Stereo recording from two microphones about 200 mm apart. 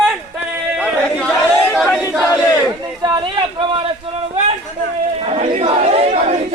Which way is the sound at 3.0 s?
20° right (ahead or behind).